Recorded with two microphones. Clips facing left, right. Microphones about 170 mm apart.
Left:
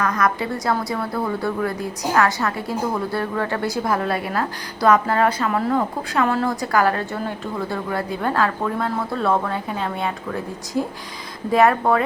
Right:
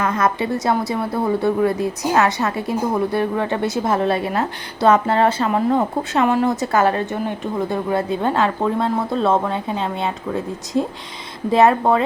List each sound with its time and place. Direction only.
0.0 s a woman's voice: 25° right (ahead or behind)